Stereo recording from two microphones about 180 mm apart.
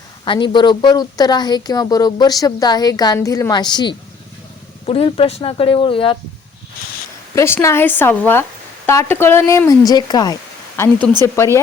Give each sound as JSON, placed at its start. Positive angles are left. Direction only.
{"t": 0.3, "sound": "speech", "side_deg": 25}
{"t": 7.3, "sound": "speech", "side_deg": 15}
{"t": 10.8, "sound": "speech", "side_deg": 10}